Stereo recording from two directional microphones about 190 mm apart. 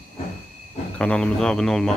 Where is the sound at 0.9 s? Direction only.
5° left (ahead or behind).